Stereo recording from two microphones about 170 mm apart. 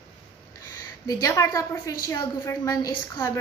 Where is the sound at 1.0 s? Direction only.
20° left (ahead or behind).